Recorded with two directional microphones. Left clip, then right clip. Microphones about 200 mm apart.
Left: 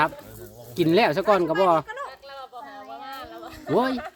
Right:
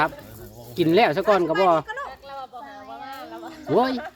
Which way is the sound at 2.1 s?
60° left (ahead or behind).